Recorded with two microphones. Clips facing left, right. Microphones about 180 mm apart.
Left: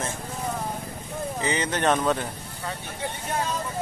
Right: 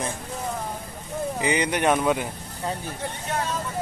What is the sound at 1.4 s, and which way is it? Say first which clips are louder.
Speech: right 2 dB; 15° right (ahead or behind).